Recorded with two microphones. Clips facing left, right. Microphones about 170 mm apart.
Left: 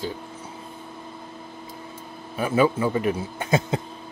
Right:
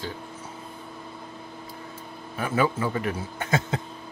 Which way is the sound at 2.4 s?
20° left (ahead or behind).